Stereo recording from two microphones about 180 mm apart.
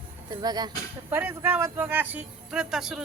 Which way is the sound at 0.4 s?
20° right (ahead or behind).